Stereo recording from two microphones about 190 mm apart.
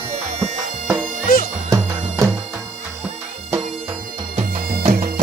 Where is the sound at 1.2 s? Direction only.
50° left (ahead or behind).